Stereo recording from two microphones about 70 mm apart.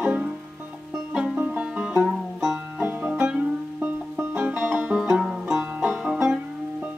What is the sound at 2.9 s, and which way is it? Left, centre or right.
Music, right.